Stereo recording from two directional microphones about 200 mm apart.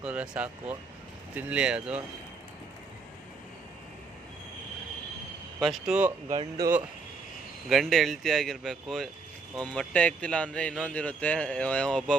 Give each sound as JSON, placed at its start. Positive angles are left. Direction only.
{"t": 0.0, "sound": "a man's voice", "side_deg": -5}
{"t": 5.5, "sound": "a man's voice", "side_deg": 0}
{"t": 6.3, "sound": "speech", "side_deg": -25}
{"t": 7.7, "sound": "a man's voice", "side_deg": 0}